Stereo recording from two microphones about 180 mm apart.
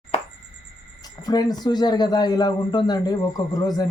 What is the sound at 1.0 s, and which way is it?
A man's voice, 20° left (ahead or behind).